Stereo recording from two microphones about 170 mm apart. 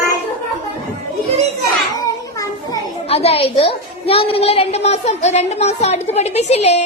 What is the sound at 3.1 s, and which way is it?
A woman's voice, 35° left (ahead or behind).